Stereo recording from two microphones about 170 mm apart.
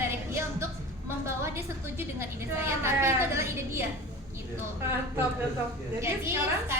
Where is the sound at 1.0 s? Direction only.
15° right (ahead or behind).